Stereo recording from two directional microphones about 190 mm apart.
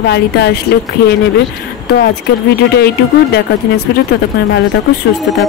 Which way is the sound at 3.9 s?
60° left (ahead or behind).